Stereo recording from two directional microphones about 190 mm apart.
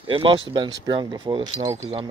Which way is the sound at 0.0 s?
25° right (ahead or behind).